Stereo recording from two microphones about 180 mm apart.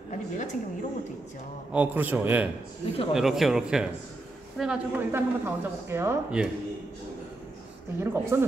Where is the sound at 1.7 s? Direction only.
10° right (ahead or behind).